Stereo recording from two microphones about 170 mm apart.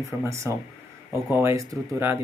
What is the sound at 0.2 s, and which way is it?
Speech, 15° right (ahead or behind).